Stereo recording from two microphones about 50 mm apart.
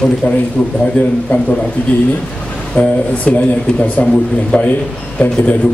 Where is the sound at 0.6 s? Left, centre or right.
Centre.